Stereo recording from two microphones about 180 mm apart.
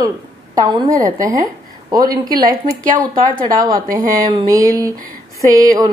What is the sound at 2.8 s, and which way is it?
Speech, 50° right (ahead or behind).